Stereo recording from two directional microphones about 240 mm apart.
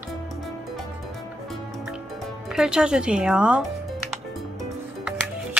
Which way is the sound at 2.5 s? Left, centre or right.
Centre.